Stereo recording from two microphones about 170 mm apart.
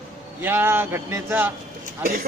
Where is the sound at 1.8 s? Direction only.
55° right (ahead or behind).